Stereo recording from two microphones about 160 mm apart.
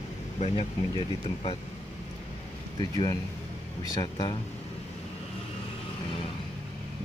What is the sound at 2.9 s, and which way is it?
Speech, 20° left (ahead or behind).